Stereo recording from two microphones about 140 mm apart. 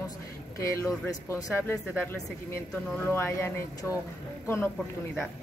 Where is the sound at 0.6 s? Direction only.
20° left (ahead or behind).